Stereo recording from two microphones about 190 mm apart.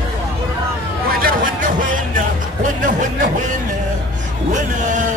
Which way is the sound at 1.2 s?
45° right (ahead or behind).